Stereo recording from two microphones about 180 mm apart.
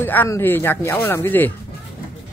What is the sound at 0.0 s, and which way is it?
Speech, 10° left (ahead or behind).